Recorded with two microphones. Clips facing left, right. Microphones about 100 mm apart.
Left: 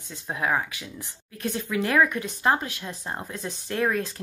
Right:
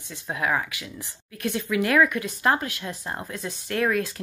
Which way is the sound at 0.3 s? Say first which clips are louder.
Even; 30° left (ahead or behind).